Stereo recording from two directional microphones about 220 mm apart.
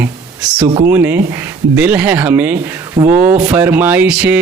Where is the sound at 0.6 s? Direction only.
20° right (ahead or behind).